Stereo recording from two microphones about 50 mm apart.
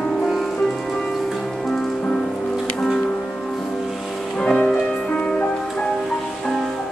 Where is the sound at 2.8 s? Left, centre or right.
Centre.